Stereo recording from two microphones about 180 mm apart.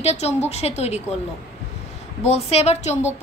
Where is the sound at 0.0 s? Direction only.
35° left (ahead or behind).